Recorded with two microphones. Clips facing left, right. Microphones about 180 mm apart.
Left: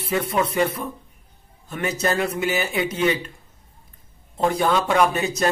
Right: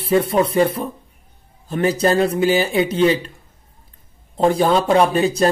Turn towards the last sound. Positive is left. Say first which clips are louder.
# right 5 dB
turn(degrees=-30)  # may be behind; listen again after turning